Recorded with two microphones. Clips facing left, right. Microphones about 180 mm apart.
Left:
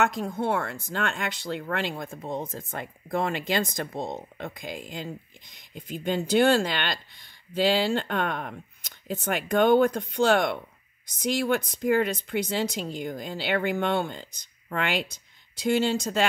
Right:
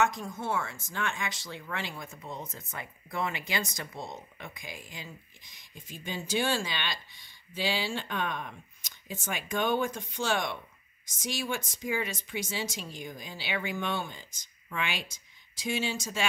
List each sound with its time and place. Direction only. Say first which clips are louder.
0.0 s speech: left 4 dB; 60° left (ahead or behind)